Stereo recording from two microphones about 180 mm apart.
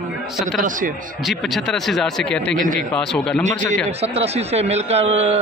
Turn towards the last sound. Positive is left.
turn(degrees=-35)  # may be behind; listen again after turning